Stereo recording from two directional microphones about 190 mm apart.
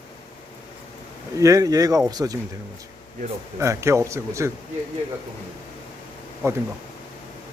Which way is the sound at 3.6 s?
15° right (ahead or behind).